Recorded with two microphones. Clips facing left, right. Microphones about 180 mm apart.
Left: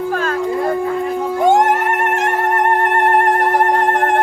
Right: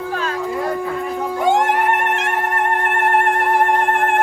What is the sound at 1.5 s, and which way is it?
Music, 40° left (ahead or behind).